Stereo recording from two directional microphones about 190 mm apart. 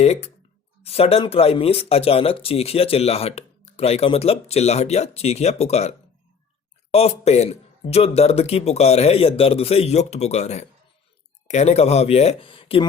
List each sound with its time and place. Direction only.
0.0 s speech: 35° left (ahead or behind)
6.9 s speech: 30° left (ahead or behind)